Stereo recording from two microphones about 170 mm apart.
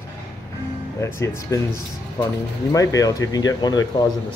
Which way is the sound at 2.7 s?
20° left (ahead or behind).